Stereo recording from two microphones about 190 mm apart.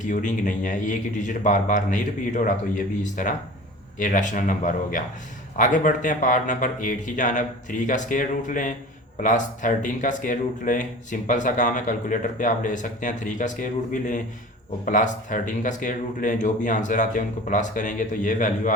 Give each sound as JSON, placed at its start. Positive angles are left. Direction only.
{"t": 0.0, "sound": "speech", "side_deg": 40}